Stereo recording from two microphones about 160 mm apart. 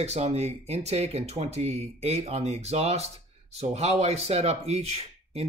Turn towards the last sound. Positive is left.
turn(degrees=-40)  # may be behind; listen again after turning